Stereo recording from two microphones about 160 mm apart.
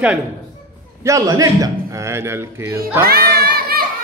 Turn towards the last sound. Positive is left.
turn(degrees=-70)  # may be behind; listen again after turning